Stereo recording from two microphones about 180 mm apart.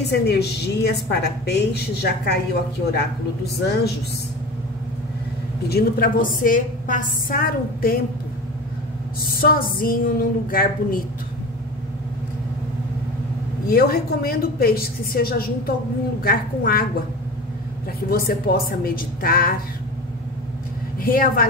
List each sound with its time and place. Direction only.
0.1 s a woman's voice: 65° left (ahead or behind)
3.6 s speech: 65° left (ahead or behind)
5.7 s a woman's voice: 55° left (ahead or behind)
9.2 s a woman's voice: 55° left (ahead or behind)
13.7 s a woman's voice: 55° left (ahead or behind)
18.1 s a woman's voice: 55° left (ahead or behind)
21.0 s a woman's voice: 55° left (ahead or behind)